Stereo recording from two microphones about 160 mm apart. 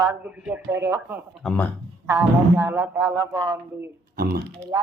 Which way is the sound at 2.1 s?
20° right (ahead or behind).